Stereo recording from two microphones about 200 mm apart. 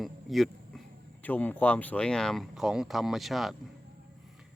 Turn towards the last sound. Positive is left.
turn(degrees=0)  # may be behind; listen again after turning